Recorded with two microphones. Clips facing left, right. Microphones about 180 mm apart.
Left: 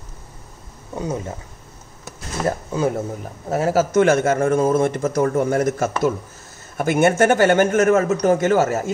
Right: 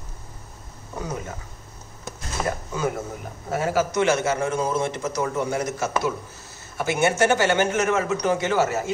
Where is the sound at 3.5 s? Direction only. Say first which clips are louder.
Left 6 dB; 40° left (ahead or behind).